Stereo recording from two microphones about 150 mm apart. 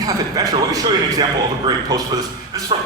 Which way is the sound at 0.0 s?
25° right (ahead or behind).